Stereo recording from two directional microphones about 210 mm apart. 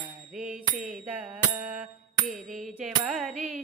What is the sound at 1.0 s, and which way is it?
Music, 5° right (ahead or behind).